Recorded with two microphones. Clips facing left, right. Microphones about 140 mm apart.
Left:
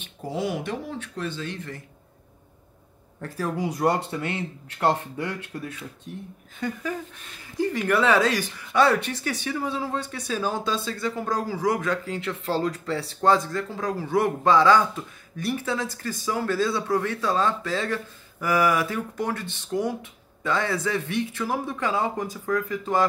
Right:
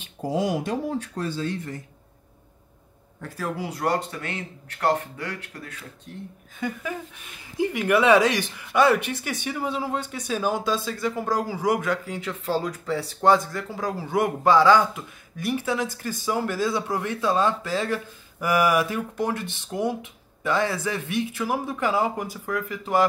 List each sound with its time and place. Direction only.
0.4 s speech: 40° right (ahead or behind)
3.2 s speech: 5° right (ahead or behind)
4.7 s speech: 20° left (ahead or behind)
6.6 s speech: 10° right (ahead or behind)